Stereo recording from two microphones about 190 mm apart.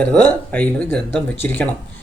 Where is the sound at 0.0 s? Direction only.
5° left (ahead or behind).